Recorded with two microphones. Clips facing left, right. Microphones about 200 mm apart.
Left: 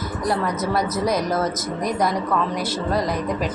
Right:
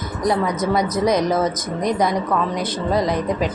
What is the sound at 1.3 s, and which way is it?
Speech, 20° right (ahead or behind).